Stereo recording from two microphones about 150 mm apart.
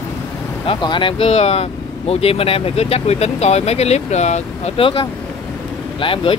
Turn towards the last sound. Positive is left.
turn(degrees=35)  # may be behind; listen again after turning